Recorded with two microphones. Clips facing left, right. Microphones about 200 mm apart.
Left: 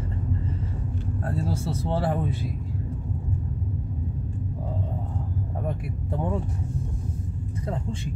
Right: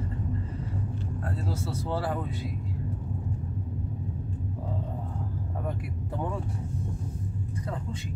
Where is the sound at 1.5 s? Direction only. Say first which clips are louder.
Left 3 dB; 25° left (ahead or behind).